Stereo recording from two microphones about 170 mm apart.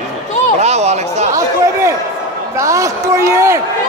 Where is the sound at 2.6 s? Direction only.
20° right (ahead or behind).